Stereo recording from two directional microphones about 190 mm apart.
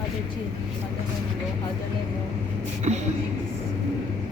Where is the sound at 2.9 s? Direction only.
35° right (ahead or behind).